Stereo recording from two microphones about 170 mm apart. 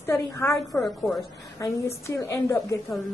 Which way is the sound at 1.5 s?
15° left (ahead or behind).